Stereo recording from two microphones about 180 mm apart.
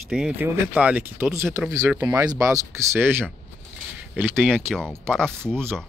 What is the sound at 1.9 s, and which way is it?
Speech, 20° right (ahead or behind).